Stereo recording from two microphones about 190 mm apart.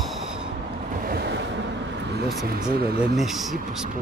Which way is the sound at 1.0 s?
60° right (ahead or behind).